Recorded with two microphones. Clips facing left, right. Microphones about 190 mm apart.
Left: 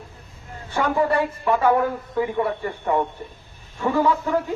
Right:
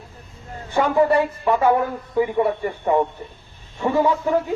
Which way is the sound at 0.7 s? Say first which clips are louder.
Right 4 dB; 15° right (ahead or behind).